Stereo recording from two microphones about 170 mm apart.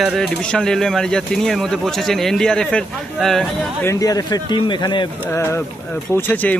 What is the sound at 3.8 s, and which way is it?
A man's voice, 20° left (ahead or behind).